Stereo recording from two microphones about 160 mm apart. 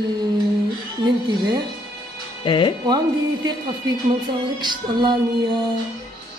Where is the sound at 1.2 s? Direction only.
25° right (ahead or behind).